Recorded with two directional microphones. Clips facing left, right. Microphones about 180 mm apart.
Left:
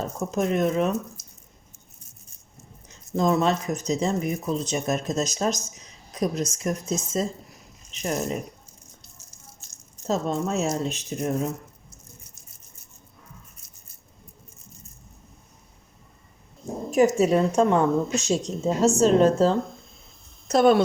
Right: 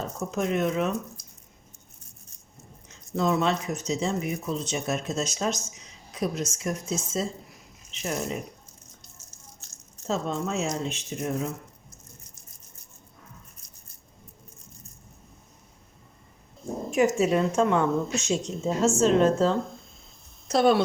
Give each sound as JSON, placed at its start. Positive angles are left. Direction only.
{"t": 0.2, "sound": "speech", "side_deg": 40}
{"t": 1.2, "sound": "a sound", "side_deg": 5}
{"t": 3.2, "sound": "speech", "side_deg": 40}
{"t": 10.1, "sound": "speech", "side_deg": 40}
{"t": 16.9, "sound": "speech", "side_deg": 40}
{"t": 20.5, "sound": "speech", "side_deg": 50}